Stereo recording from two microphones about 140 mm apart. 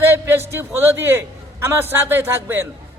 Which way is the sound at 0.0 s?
15° right (ahead or behind).